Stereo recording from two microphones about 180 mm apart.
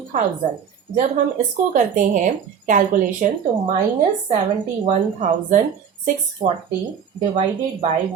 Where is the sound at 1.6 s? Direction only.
45° right (ahead or behind).